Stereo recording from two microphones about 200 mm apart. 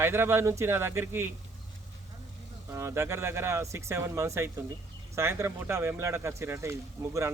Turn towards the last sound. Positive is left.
turn(degrees=-15)  # may be behind; listen again after turning